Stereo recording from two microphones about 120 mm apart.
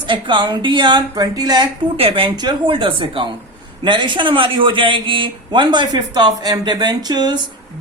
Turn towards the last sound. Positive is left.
turn(degrees=-35)  # may be behind; listen again after turning